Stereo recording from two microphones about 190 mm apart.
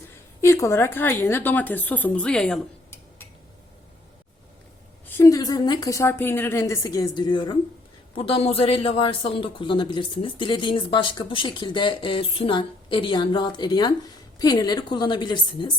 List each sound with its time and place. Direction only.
0.4 s a woman's voice: 15° left (ahead or behind)
5.0 s a woman's voice: 15° left (ahead or behind)